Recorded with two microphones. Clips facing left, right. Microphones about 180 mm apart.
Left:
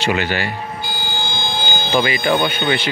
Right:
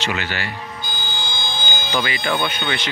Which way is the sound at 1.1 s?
60° left (ahead or behind).